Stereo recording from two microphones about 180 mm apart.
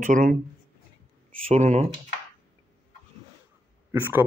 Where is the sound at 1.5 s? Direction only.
40° right (ahead or behind).